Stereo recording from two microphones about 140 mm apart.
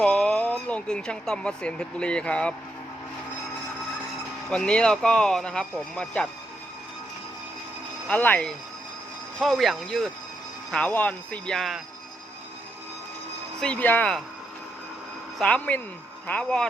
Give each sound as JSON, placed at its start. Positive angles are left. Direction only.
{"t": 0.0, "sound": "speech", "side_deg": 5}
{"t": 4.4, "sound": "speech", "side_deg": 5}
{"t": 8.0, "sound": "speech", "side_deg": 10}
{"t": 13.6, "sound": "speech", "side_deg": 10}
{"t": 15.4, "sound": "speech", "side_deg": 10}